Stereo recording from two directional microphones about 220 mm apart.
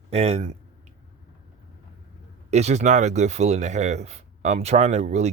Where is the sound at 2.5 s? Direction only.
30° right (ahead or behind).